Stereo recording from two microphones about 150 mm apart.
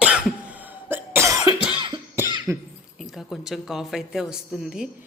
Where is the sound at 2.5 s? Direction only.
15° right (ahead or behind).